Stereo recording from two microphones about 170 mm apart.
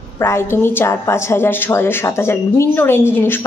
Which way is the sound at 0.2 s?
15° left (ahead or behind).